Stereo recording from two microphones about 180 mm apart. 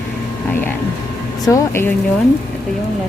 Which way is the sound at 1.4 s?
15° left (ahead or behind).